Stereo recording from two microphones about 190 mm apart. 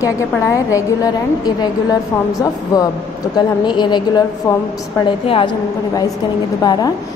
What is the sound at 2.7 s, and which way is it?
A woman's voice, 20° left (ahead or behind).